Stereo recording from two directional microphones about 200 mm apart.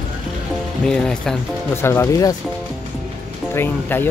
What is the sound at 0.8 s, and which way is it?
Speech, 5° left (ahead or behind).